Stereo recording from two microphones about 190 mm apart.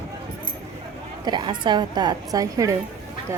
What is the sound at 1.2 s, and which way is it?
A woman's voice, 25° right (ahead or behind).